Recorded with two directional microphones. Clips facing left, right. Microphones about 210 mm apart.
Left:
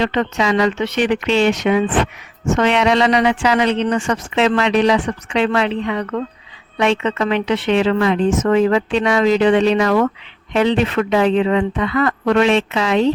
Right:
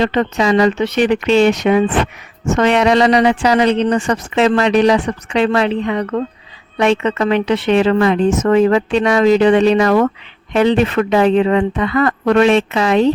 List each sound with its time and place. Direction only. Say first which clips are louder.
0.0 s a woman's voice: right 3 dB; 40° right (ahead or behind)